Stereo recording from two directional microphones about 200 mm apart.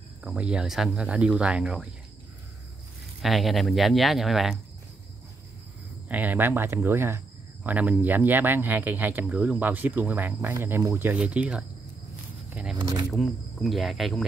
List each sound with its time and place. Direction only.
0.2 s speech: 5° right (ahead or behind)
3.2 s speech: centre (ahead or behind)
6.0 s speech: 10° right (ahead or behind)
12.7 s speech: 20° right (ahead or behind)
13.1 s speech: centre (ahead or behind)